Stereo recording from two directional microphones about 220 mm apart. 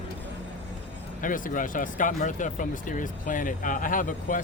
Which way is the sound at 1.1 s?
35° left (ahead or behind).